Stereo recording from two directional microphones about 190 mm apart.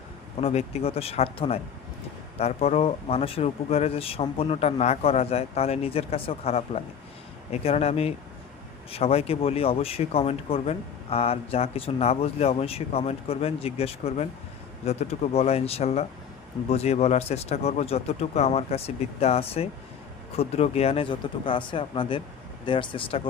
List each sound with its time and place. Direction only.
0.4 s speech: 30° left (ahead or behind)